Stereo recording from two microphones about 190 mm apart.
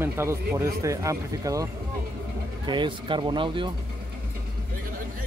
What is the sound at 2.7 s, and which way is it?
Speech, 25° right (ahead or behind).